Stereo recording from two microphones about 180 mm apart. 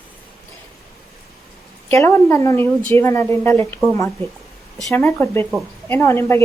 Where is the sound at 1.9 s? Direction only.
15° left (ahead or behind).